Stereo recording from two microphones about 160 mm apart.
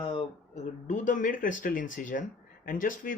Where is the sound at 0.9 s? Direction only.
55° left (ahead or behind).